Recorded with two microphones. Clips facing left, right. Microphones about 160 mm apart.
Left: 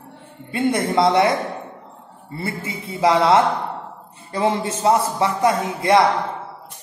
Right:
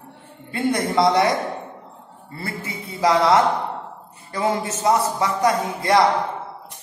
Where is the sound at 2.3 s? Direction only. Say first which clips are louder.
Left 3 dB; 25° left (ahead or behind).